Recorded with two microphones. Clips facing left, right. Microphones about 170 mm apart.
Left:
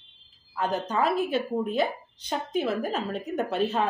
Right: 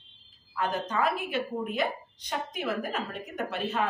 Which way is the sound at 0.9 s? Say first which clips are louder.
Left 6 dB; 35° left (ahead or behind).